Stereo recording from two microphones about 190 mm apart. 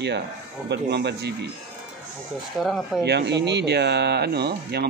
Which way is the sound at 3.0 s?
60° right (ahead or behind).